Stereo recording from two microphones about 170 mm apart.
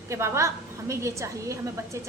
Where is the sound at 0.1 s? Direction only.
15° right (ahead or behind).